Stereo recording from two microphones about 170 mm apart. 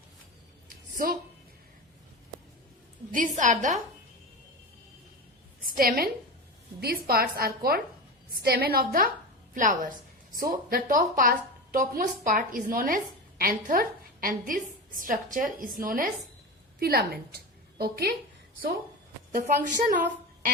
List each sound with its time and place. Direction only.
3.1 s a woman's voice: 50° right (ahead or behind)
5.6 s a woman's voice: 55° right (ahead or behind)
16.8 s a woman's voice: 65° right (ahead or behind)
19.3 s a woman's voice: 50° right (ahead or behind)